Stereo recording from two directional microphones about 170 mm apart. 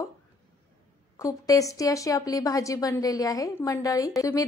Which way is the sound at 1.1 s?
20° left (ahead or behind).